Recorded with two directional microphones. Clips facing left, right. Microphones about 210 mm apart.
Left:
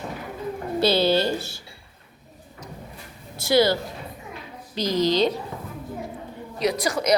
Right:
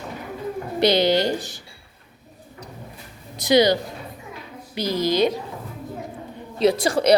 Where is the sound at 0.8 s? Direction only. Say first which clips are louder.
Right 2 dB; 15° right (ahead or behind).